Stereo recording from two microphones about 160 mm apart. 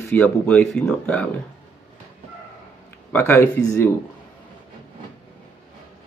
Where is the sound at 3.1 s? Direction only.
15° left (ahead or behind).